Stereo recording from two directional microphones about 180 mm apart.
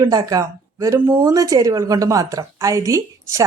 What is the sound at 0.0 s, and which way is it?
Speech, 20° right (ahead or behind).